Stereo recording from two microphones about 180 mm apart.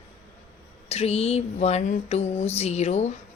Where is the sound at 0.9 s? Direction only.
35° left (ahead or behind).